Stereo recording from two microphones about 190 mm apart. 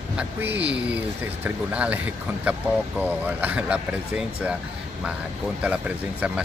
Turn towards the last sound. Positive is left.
turn(degrees=-5)  # may be behind; listen again after turning